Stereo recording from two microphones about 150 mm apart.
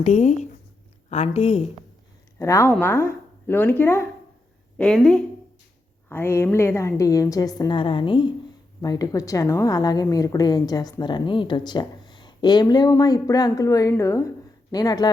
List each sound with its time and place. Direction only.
0.0 s a woman's voice: 55° left (ahead or behind)
2.4 s a woman's voice: 20° left (ahead or behind)
4.8 s a woman's voice: 5° left (ahead or behind)
6.1 s a woman's voice: 15° left (ahead or behind)